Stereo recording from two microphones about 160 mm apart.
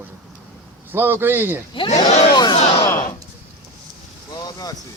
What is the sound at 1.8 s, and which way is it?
Speech, 45° left (ahead or behind).